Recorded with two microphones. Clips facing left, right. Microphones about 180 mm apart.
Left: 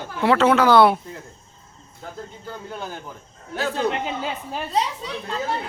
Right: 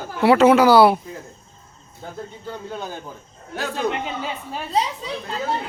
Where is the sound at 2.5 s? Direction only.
20° right (ahead or behind).